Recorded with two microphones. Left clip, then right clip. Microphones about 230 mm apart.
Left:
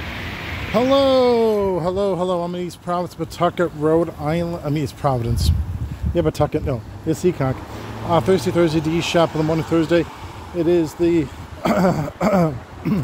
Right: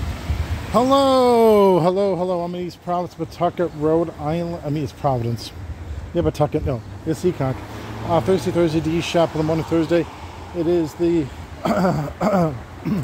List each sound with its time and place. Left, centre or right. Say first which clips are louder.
0.7 s speech: even; centre
1.5 s speech: right 5 dB; right
2.0 s speech: even; centre